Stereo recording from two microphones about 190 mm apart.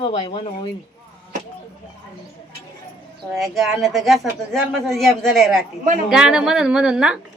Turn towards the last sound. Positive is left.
turn(degrees=-5)  # may be behind; listen again after turning